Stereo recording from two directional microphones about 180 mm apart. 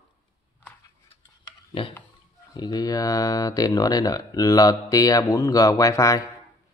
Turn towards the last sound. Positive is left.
turn(degrees=20)  # may be behind; listen again after turning